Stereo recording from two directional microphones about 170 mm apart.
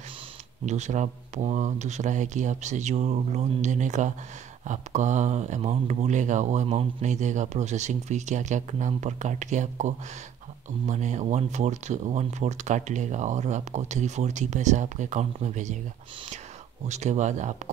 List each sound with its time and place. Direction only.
0.7 s speech: 45° right (ahead or behind)
16.8 s speech: 45° right (ahead or behind)